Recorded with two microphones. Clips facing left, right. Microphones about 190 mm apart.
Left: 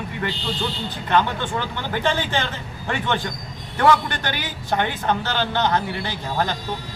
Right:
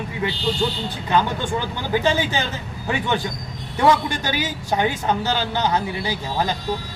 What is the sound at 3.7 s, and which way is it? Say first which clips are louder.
A woman's voice: even; 10° right (ahead or behind).